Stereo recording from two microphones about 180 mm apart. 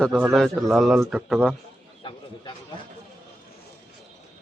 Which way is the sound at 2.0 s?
30° left (ahead or behind).